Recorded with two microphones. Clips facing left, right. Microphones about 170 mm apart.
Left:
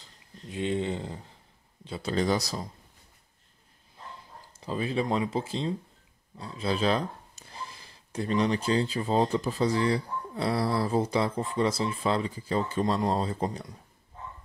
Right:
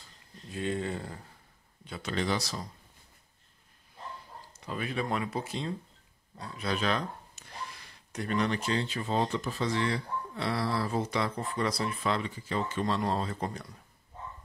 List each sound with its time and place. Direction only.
0.5 s a sound: 20° left (ahead or behind)
1.9 s speech: 30° left (ahead or behind)
4.5 s speech: 30° left (ahead or behind)